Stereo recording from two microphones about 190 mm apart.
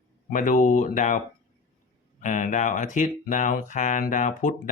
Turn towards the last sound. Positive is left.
turn(degrees=40)  # may be behind; listen again after turning